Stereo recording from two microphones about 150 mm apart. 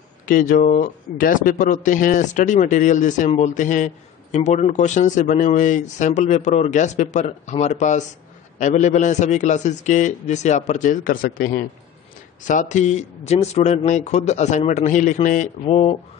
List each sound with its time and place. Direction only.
0.3 s speech: 65° left (ahead or behind)
12.4 s a man's voice: 55° left (ahead or behind)